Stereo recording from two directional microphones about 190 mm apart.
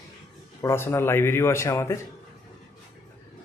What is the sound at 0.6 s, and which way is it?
Speech, 15° left (ahead or behind).